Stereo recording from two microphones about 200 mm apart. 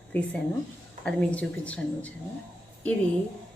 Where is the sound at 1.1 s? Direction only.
5° left (ahead or behind).